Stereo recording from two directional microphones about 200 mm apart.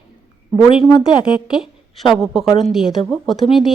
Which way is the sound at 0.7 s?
25° left (ahead or behind).